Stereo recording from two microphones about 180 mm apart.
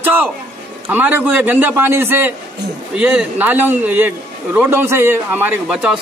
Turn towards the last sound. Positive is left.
turn(degrees=-5)  # may be behind; listen again after turning